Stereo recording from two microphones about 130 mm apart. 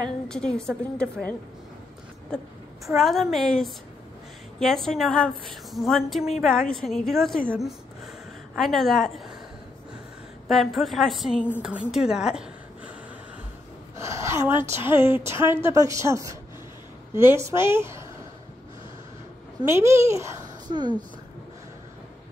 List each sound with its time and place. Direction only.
0.3 s a woman's voice: 5° left (ahead or behind)
2.3 s a woman's voice: 5° left (ahead or behind)
8.5 s a woman's voice: centre (ahead or behind)
10.5 s a woman's voice: centre (ahead or behind)
13.9 s a woman's voice: 20° right (ahead or behind)
19.6 s a woman's voice: 20° right (ahead or behind)
20.6 s speech: 35° right (ahead or behind)